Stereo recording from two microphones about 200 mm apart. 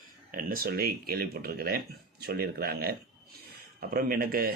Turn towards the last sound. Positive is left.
turn(degrees=-45)  # may be behind; listen again after turning